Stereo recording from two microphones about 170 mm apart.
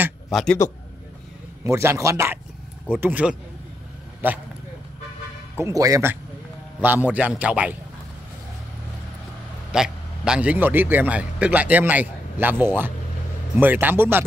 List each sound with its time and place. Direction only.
0.3 s a man's voice: centre (ahead or behind)
1.6 s a man's voice: 15° right (ahead or behind)
5.6 s a man's voice: 20° right (ahead or behind)
9.7 s a man's voice: 5° right (ahead or behind)